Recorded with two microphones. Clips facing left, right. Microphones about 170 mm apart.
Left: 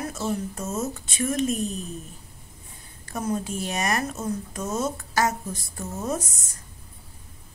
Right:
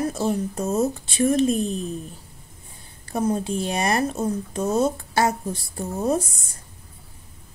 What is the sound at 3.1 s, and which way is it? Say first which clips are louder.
Speech: right 5 dB; 30° right (ahead or behind).